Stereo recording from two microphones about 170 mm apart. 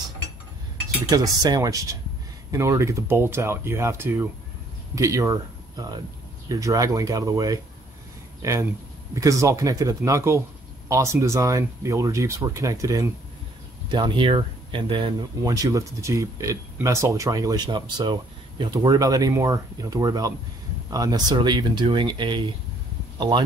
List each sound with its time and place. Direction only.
1.1 s speech: 20° right (ahead or behind)